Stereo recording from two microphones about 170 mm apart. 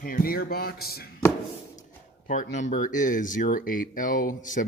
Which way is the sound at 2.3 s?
45° left (ahead or behind).